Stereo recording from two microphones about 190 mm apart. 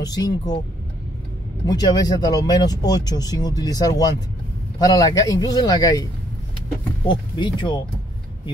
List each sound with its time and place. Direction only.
0.0 s speech: 20° left (ahead or behind)
1.7 s speech: 20° left (ahead or behind)
7.1 s speech: 25° left (ahead or behind)